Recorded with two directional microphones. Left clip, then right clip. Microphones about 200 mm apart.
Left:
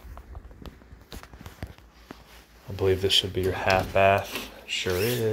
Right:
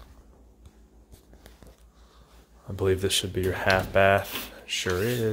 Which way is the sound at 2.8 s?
25° right (ahead or behind).